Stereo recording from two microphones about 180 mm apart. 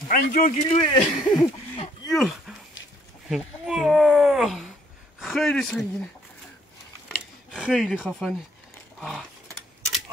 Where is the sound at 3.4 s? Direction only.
Centre (ahead or behind).